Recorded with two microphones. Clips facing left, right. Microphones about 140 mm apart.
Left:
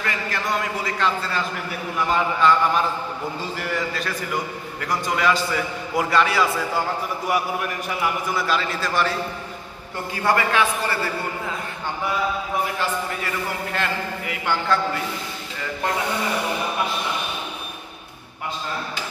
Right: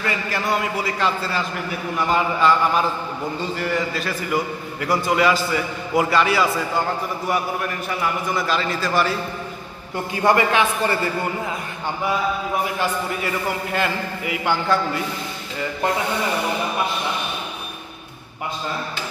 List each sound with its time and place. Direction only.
0.0 s a man's voice: 5° right (ahead or behind)
8.0 s a man's voice: 5° left (ahead or behind)
10.2 s a man's voice: 20° right (ahead or behind)
13.7 s a man's voice: 10° right (ahead or behind)